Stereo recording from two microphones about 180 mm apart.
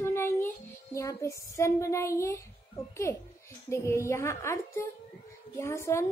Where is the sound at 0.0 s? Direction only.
10° left (ahead or behind).